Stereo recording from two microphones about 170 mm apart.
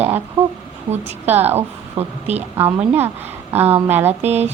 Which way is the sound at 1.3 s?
40° right (ahead or behind).